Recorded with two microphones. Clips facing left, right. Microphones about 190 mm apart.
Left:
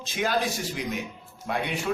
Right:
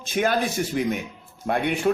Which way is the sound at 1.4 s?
55° right (ahead or behind).